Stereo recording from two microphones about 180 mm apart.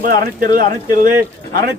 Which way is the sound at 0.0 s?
50° right (ahead or behind).